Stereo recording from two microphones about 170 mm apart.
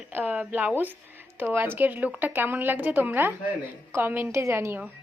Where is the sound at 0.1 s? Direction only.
10° right (ahead or behind).